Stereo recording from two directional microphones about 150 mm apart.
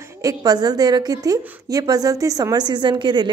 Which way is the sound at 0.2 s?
25° right (ahead or behind).